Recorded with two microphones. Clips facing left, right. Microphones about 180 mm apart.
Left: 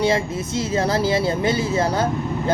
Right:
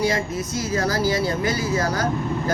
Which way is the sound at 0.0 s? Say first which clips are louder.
Left 3 dB; 25° left (ahead or behind).